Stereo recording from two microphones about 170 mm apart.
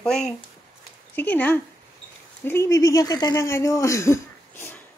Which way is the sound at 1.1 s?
10° left (ahead or behind).